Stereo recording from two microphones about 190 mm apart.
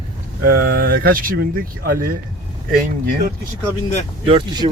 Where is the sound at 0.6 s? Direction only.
55° right (ahead or behind).